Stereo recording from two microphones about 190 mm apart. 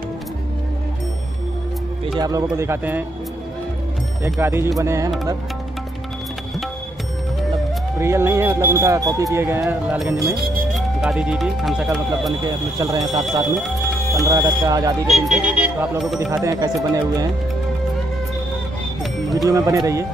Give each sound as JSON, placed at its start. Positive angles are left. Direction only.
{"t": 2.1, "sound": "speech", "side_deg": -20}
{"t": 4.2, "sound": "speech", "side_deg": -15}
{"t": 8.0, "sound": "speech", "side_deg": -15}
{"t": 12.4, "sound": "speech", "side_deg": -20}
{"t": 13.6, "sound": "music", "side_deg": 0}
{"t": 14.2, "sound": "speech", "side_deg": -15}
{"t": 15.0, "sound": "speech", "side_deg": 0}
{"t": 16.4, "sound": "speech", "side_deg": -20}
{"t": 19.3, "sound": "speech", "side_deg": -15}